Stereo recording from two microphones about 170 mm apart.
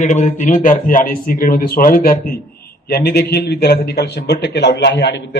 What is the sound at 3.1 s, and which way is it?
A man's voice, 70° left (ahead or behind).